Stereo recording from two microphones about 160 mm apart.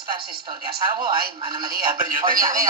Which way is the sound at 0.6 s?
25° right (ahead or behind).